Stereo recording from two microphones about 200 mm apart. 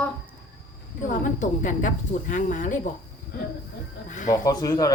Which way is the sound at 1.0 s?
40° left (ahead or behind).